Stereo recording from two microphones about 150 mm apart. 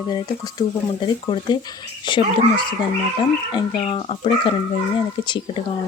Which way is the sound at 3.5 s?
35° left (ahead or behind).